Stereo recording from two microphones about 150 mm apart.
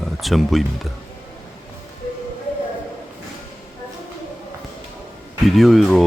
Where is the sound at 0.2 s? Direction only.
Centre (ahead or behind).